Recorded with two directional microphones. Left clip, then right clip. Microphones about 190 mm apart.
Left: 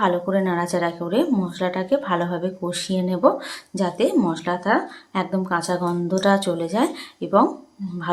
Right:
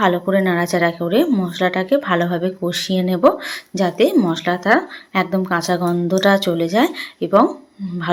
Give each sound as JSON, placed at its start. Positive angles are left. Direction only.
{"t": 0.0, "sound": "a woman's voice", "side_deg": -20}